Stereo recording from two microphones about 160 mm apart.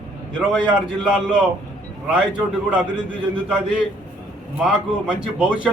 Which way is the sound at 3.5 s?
5° right (ahead or behind).